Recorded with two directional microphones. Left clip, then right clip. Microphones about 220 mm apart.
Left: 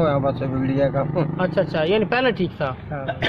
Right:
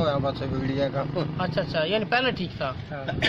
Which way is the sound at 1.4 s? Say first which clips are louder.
Left 5 dB; 35° left (ahead or behind).